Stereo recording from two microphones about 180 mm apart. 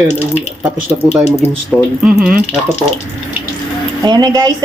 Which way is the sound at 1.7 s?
Centre (ahead or behind).